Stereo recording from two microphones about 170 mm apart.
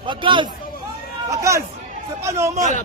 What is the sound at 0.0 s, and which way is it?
Chatter, 30° right (ahead or behind).